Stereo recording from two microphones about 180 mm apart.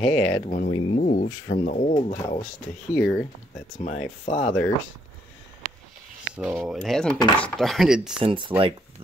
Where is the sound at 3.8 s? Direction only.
45° left (ahead or behind).